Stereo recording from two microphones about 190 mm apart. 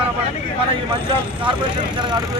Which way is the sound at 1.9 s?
25° right (ahead or behind).